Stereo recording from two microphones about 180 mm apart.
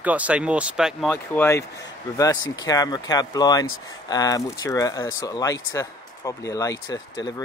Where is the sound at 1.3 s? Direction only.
10° left (ahead or behind).